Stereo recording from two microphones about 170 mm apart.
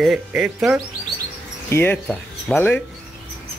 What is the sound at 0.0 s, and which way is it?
Speech, 5° right (ahead or behind).